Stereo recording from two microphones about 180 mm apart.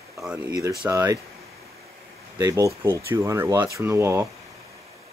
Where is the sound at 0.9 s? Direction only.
20° right (ahead or behind).